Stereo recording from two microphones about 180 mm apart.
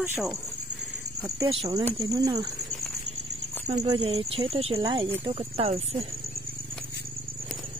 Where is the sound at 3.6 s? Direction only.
35° right (ahead or behind).